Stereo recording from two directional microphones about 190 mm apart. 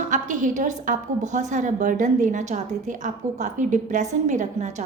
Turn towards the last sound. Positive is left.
turn(degrees=-40)  # may be behind; listen again after turning